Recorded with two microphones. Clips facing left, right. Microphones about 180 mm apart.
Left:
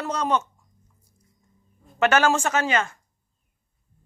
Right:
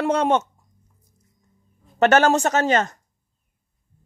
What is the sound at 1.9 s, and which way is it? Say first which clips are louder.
A man's voice: right 4 dB; 40° right (ahead or behind).